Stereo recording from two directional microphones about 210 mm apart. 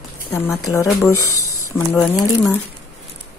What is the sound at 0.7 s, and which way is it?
Speech, 15° left (ahead or behind).